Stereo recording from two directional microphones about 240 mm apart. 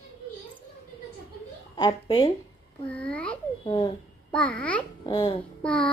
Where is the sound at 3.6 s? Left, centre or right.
Centre.